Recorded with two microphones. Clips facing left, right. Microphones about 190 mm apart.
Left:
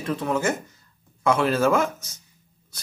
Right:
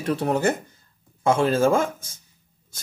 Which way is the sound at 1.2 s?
25° right (ahead or behind).